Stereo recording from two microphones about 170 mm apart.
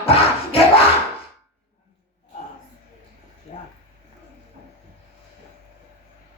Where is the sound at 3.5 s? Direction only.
40° left (ahead or behind).